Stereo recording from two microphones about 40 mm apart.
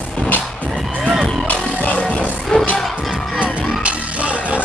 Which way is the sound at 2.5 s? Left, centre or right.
Left.